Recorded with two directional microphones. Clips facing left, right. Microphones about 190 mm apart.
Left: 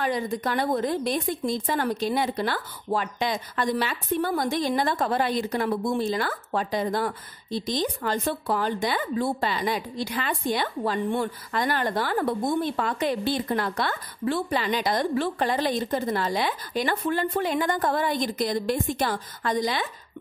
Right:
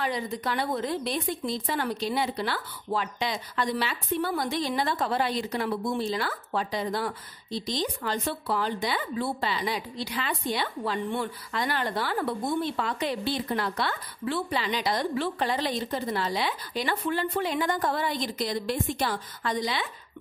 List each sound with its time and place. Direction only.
0.0 s speech: 50° left (ahead or behind)